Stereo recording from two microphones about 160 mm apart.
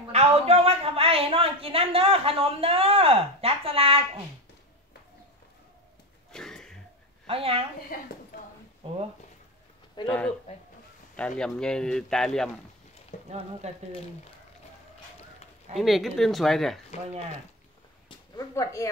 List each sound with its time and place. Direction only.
0.1 s a woman's voice: 40° right (ahead or behind)
6.3 s throat clearing: 5° left (ahead or behind)
7.2 s a woman's voice: 35° right (ahead or behind)
7.9 s a woman's voice: 60° left (ahead or behind)
8.8 s speech: 40° right (ahead or behind)
10.0 s speech: 10° left (ahead or behind)
13.1 s frying: 50° left (ahead or behind)
13.6 s speech: 45° right (ahead or behind)
15.7 s speech: centre (ahead or behind)
18.5 s speech: 20° left (ahead or behind)